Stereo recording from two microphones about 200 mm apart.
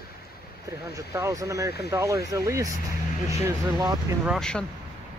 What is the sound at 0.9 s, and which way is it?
Speech, 15° right (ahead or behind).